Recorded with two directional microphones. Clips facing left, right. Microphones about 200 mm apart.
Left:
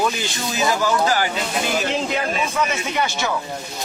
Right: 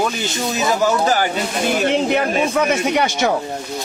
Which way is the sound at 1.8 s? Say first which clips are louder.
Right 6 dB; 60° right (ahead or behind).